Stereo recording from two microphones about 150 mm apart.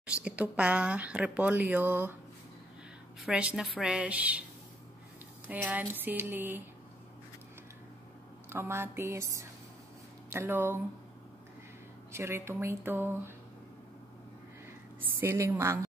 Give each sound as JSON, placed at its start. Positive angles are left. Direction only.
{"t": 0.0, "sound": "speech", "side_deg": -10}
{"t": 3.2, "sound": "a woman's voice", "side_deg": -5}
{"t": 5.5, "sound": "speech", "side_deg": -10}
{"t": 8.5, "sound": "speech", "side_deg": -15}
{"t": 12.1, "sound": "speech", "side_deg": -15}
{"t": 15.0, "sound": "speech", "side_deg": -15}